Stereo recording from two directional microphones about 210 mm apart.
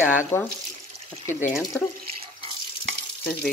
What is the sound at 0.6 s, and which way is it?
Water, 35° right (ahead or behind).